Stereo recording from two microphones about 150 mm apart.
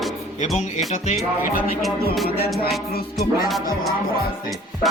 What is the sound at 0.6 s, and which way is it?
Speech, 50° left (ahead or behind).